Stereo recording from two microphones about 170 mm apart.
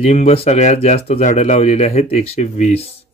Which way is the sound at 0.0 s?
40° left (ahead or behind).